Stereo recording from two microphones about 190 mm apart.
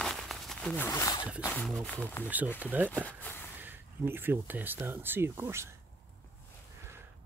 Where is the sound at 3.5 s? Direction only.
10° right (ahead or behind).